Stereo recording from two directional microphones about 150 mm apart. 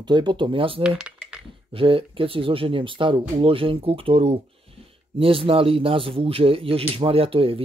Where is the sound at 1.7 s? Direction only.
35° right (ahead or behind).